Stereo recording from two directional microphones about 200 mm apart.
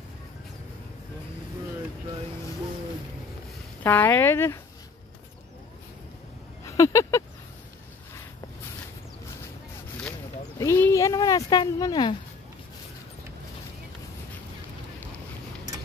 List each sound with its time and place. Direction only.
3.8 s speech: 10° left (ahead or behind)
6.6 s a sound: 15° left (ahead or behind)
10.6 s speech: 15° left (ahead or behind)